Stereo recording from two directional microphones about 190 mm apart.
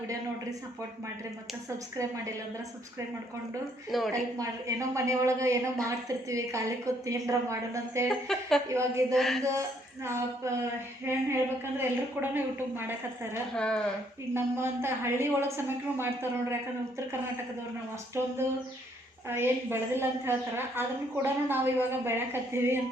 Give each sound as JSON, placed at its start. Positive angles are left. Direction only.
{"t": 3.9, "sound": "a woman's voice", "side_deg": 0}
{"t": 4.4, "sound": "a woman's voice", "side_deg": -15}
{"t": 8.3, "sound": "a woman's voice", "side_deg": 0}
{"t": 8.7, "sound": "a woman's voice", "side_deg": -15}
{"t": 9.1, "sound": "a woman's voice", "side_deg": 0}
{"t": 9.4, "sound": "a woman's voice", "side_deg": -15}
{"t": 13.6, "sound": "a woman's voice", "side_deg": 5}
{"t": 14.3, "sound": "a woman's voice", "side_deg": -10}
{"t": 18.2, "sound": "a woman's voice", "side_deg": -15}